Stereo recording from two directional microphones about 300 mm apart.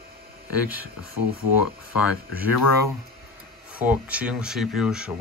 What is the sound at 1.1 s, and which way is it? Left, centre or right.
Speech, left.